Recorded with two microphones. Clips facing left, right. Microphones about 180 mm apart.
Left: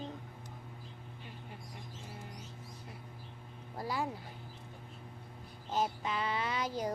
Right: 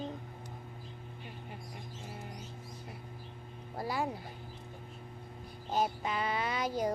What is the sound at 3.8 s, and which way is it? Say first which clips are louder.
Child singing: right 2 dB; 10° right (ahead or behind).